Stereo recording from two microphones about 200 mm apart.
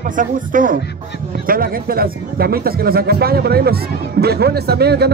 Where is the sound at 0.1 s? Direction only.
40° right (ahead or behind).